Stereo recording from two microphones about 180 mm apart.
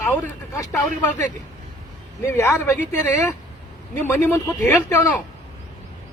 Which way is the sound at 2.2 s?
15° left (ahead or behind).